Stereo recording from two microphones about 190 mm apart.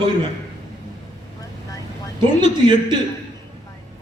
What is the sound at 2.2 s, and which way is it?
Speech, 25° right (ahead or behind).